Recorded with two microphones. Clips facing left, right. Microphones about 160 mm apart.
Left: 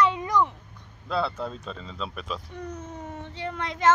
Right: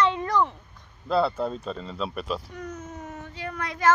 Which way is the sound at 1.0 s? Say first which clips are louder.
Right 5 dB; centre (ahead or behind).